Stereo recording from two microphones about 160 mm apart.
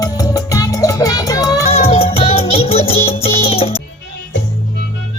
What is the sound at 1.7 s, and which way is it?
Music, 40° left (ahead or behind).